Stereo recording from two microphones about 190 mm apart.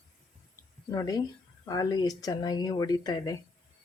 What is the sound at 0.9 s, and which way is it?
Speech, 20° left (ahead or behind).